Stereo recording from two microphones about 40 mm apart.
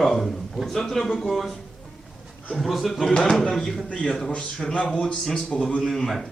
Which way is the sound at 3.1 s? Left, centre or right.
Centre.